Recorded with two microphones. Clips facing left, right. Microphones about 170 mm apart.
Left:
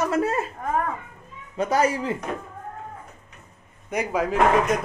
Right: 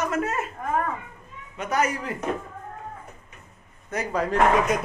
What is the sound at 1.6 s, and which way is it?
Speech, 30° left (ahead or behind).